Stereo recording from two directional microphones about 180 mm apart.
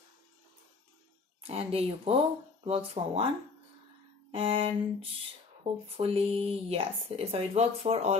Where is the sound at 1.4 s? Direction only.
35° right (ahead or behind).